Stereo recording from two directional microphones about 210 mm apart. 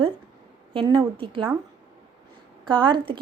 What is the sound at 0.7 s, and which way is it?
Speech, 25° right (ahead or behind).